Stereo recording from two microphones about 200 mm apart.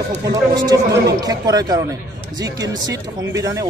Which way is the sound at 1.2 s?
20° right (ahead or behind).